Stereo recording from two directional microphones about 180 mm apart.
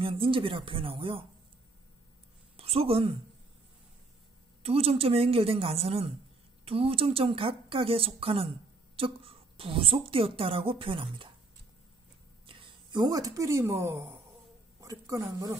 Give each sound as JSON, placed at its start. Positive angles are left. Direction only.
{"t": 0.0, "sound": "speech", "side_deg": -30}
{"t": 2.5, "sound": "a woman's voice", "side_deg": -35}
{"t": 4.6, "sound": "a woman's voice", "side_deg": -30}
{"t": 12.4, "sound": "a woman's voice", "side_deg": -25}